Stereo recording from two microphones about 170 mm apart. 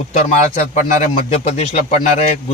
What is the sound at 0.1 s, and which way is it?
Speech, 45° left (ahead or behind).